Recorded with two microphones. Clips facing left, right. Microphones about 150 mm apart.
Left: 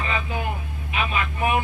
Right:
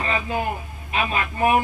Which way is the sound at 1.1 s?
45° right (ahead or behind).